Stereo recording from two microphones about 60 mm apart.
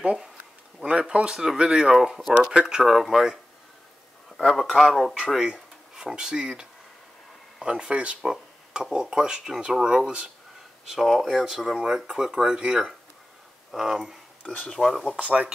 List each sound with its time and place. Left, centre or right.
0.0 s speech: centre
2.3 s speech: centre
4.4 s speech: centre
8.2 s speech: centre
10.9 s speech: centre
14.7 s speech: centre
15.1 s speech: right